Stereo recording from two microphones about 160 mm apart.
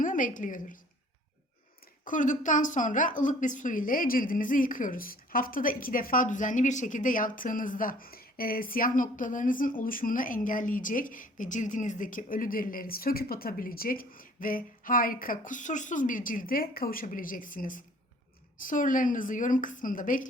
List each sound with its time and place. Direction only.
0.0 s a woman's voice: 55° left (ahead or behind)
2.0 s a woman's voice: 50° left (ahead or behind)